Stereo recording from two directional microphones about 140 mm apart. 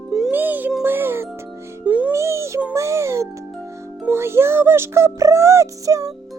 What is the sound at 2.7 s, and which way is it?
Music, 20° right (ahead or behind).